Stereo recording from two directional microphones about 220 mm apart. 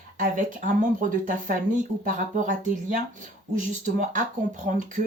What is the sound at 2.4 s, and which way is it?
Speech, 35° right (ahead or behind).